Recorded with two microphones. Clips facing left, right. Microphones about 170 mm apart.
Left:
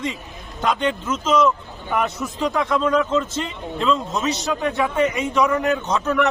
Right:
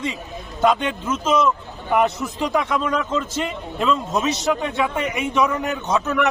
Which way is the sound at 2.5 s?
Centre (ahead or behind).